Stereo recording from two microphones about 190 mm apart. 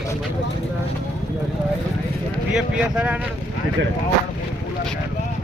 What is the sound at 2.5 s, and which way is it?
Speech, 5° right (ahead or behind).